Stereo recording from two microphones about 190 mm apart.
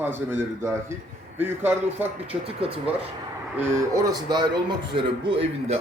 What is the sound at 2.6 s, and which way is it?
Speech, 30° right (ahead or behind).